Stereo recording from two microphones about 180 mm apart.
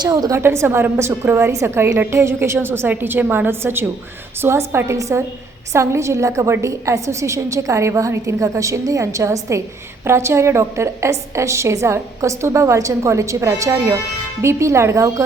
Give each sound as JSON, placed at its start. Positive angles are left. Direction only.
{"t": 0.0, "sound": "a woman's voice", "side_deg": -20}